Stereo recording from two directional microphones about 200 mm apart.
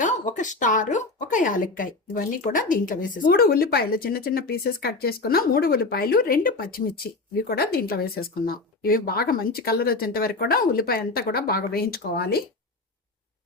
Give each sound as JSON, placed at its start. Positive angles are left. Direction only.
{"t": 0.0, "sound": "speech", "side_deg": 40}